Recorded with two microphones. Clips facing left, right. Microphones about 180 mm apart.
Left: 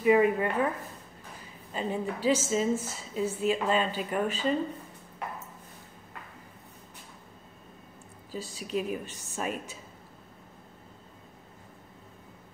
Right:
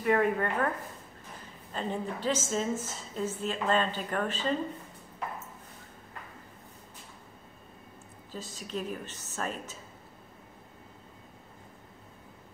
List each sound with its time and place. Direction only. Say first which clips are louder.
0.0 s a woman's voice: left 4 dB; 5° left (ahead or behind)
1.7 s a woman's voice: left 2 dB; 5° left (ahead or behind)
8.3 s a woman's voice: left 4 dB; 10° left (ahead or behind)